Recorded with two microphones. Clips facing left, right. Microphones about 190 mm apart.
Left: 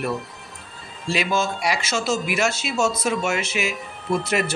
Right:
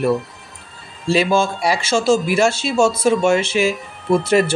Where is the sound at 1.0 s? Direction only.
30° right (ahead or behind).